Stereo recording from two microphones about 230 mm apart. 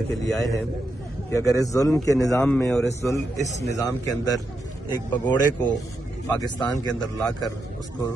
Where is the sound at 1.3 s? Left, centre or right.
Centre.